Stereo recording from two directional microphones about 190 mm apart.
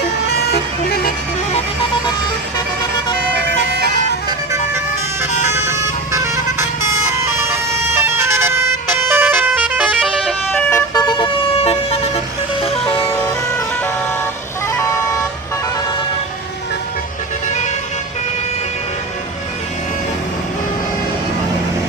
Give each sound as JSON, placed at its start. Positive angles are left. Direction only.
{"t": 0.5, "sound": "vehicle", "side_deg": 55}
{"t": 1.5, "sound": "vehicle", "side_deg": 30}
{"t": 5.2, "sound": "vehicle", "side_deg": -15}
{"t": 10.5, "sound": "emergency vehicle", "side_deg": 10}
{"t": 12.5, "sound": "music", "side_deg": 30}
{"t": 14.7, "sound": "vehicle", "side_deg": 15}